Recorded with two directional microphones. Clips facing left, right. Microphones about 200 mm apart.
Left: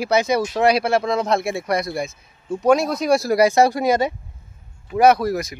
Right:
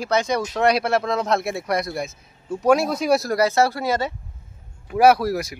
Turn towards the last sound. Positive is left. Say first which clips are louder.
# left 1 dB
turn(degrees=-5)  # may be behind; listen again after turning